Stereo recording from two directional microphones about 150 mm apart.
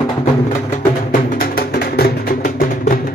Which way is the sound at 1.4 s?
90° left.